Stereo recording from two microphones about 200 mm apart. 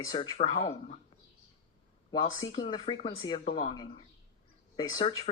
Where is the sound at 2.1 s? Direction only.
20° left (ahead or behind).